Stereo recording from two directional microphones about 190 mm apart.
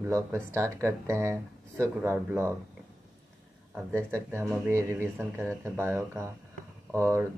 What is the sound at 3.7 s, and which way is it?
Speech, 10° right (ahead or behind).